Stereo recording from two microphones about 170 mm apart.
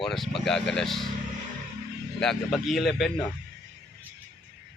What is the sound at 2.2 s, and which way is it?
Speech, centre (ahead or behind).